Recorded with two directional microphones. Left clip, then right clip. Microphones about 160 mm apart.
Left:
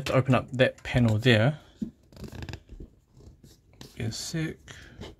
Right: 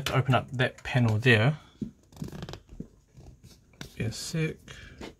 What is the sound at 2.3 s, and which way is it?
Scissors, 55° right (ahead or behind).